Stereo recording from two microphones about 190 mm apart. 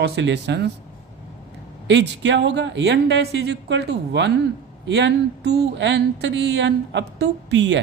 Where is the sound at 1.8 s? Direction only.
65° right (ahead or behind).